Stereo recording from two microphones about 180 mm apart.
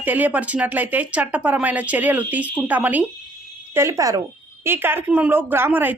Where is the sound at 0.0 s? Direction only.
10° right (ahead or behind).